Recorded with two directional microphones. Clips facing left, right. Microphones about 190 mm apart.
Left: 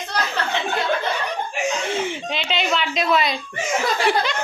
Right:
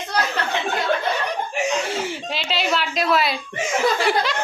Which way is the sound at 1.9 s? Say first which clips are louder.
Left 2 dB; 5° right (ahead or behind).